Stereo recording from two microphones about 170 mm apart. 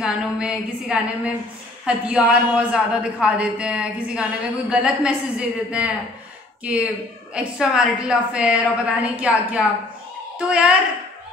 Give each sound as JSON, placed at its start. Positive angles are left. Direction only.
{"t": 0.0, "sound": "a woman's voice", "side_deg": -5}